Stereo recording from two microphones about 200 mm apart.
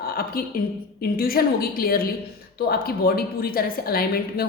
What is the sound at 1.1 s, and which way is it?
A woman's voice, 45° left (ahead or behind).